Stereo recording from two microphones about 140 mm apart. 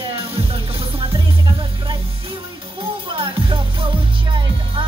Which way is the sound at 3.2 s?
40° right (ahead or behind).